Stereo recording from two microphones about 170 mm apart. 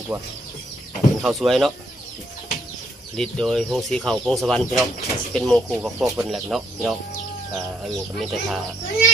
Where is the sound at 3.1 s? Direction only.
5° left (ahead or behind).